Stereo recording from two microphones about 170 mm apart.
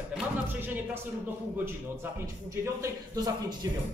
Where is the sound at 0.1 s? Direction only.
10° right (ahead or behind).